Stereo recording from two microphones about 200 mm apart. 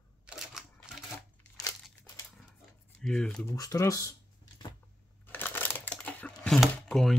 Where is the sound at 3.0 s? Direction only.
5° left (ahead or behind).